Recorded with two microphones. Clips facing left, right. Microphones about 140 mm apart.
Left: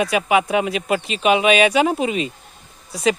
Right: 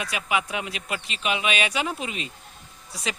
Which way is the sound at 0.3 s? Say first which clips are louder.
Left 10 dB; 90° left.